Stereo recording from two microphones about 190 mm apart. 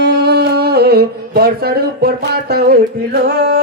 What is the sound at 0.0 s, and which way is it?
Humming, 60° right (ahead or behind).